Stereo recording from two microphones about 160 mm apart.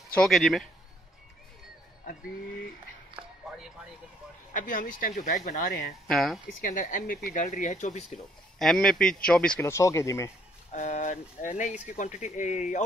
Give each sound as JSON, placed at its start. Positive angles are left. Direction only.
{"t": 0.1, "sound": "speech", "side_deg": 5}
{"t": 4.6, "sound": "speech", "side_deg": 55}
{"t": 6.0, "sound": "speech", "side_deg": 0}
{"t": 6.6, "sound": "speech", "side_deg": 55}
{"t": 8.5, "sound": "speech", "side_deg": 0}
{"t": 9.7, "sound": "speech", "side_deg": 20}
{"t": 10.7, "sound": "speech", "side_deg": 45}